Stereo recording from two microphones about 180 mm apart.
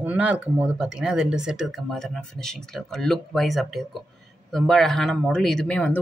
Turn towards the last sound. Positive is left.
turn(degrees=5)  # may be behind; listen again after turning